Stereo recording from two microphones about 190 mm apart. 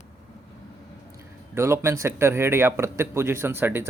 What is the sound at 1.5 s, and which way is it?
Speech, 15° right (ahead or behind).